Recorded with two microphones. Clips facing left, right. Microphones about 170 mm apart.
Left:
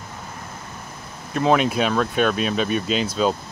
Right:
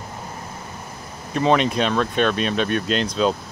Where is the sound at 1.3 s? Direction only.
Centre (ahead or behind).